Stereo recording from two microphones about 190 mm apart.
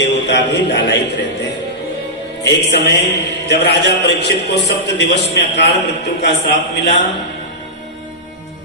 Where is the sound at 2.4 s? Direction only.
65° left (ahead or behind).